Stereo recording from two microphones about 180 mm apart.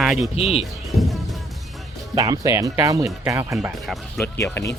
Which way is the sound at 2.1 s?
20° right (ahead or behind).